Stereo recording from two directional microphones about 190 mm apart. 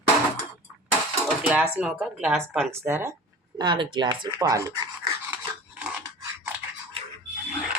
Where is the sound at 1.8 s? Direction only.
5° right (ahead or behind).